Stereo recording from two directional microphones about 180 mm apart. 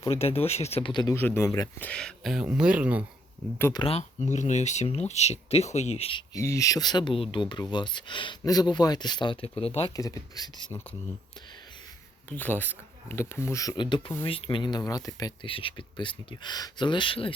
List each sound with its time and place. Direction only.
0.0 s speech: 35° left (ahead or behind)
1.1 s speech: 15° left (ahead or behind)
1.9 s speech: 5° left (ahead or behind)
3.6 s speech: 20° left (ahead or behind)
3.8 s speech: 40° left (ahead or behind)
6.3 s speech: 15° left (ahead or behind); by 9.9 s 30° left (ahead or behind)
9.9 s speech: 20° left (ahead or behind)
12.3 s speech: 10° left (ahead or behind); by 17.3 s 30° left (ahead or behind)